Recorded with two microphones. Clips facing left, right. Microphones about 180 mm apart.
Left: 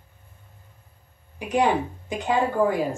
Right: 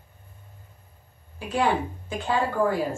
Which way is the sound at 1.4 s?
15° left (ahead or behind).